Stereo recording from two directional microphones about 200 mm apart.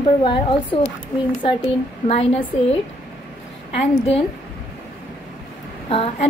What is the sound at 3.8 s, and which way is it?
Speech, 30° left (ahead or behind).